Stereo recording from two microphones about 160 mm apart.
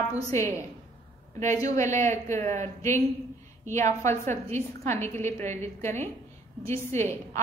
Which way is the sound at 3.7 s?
15° left (ahead or behind).